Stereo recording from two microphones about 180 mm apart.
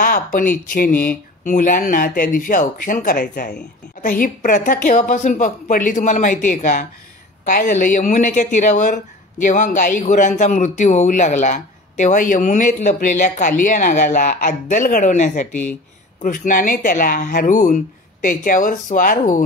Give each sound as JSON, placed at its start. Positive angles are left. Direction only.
{"t": 0.0, "sound": "speech", "side_deg": 50}